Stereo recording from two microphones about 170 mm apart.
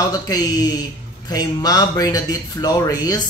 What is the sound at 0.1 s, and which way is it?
Speech, 20° left (ahead or behind).